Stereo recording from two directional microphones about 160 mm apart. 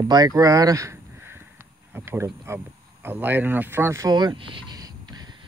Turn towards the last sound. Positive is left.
turn(degrees=-25)  # may be behind; listen again after turning